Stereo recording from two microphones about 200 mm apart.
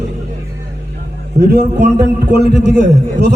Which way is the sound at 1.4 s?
55° right (ahead or behind).